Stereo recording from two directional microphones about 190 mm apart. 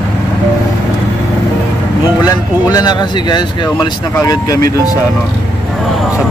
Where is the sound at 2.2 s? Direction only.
20° left (ahead or behind).